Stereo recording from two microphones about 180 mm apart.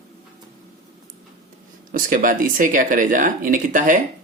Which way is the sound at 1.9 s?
50° right (ahead or behind).